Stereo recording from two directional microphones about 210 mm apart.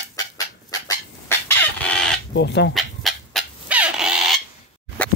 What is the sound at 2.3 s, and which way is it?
Speech, 55° left (ahead or behind).